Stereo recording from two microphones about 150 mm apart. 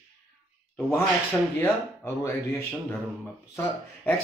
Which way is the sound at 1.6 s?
15° left (ahead or behind).